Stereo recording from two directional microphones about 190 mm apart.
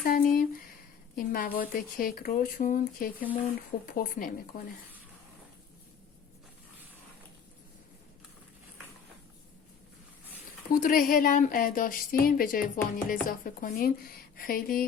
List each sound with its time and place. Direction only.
0.0 s a sound: 50° left (ahead or behind)
1.1 s a woman's voice: 50° left (ahead or behind)
10.8 s a woman's voice: 50° left (ahead or behind)